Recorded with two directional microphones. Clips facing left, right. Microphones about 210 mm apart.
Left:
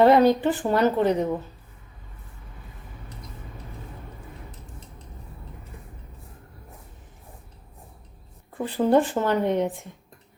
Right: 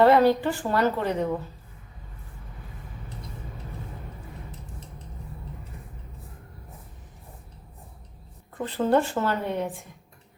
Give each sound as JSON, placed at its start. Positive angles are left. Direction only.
{"t": 0.0, "sound": "a woman's voice", "side_deg": 15}
{"t": 8.5, "sound": "speech", "side_deg": 10}